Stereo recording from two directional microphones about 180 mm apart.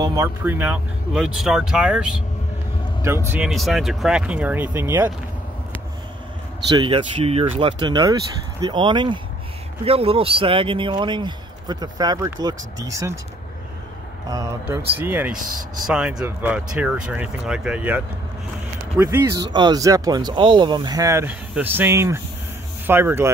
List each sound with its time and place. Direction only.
0.0 s speech: 20° right (ahead or behind)
0.4 s speech: 10° right (ahead or behind)
3.0 s speech: 15° right (ahead or behind)
6.8 s speech: 30° right (ahead or behind)
14.3 s speech: 20° right (ahead or behind)
15.3 s speech: 50° right (ahead or behind)
15.9 s speech: 5° right (ahead or behind)